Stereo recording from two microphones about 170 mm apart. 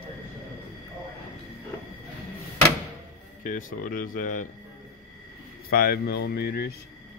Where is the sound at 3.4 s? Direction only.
50° left (ahead or behind).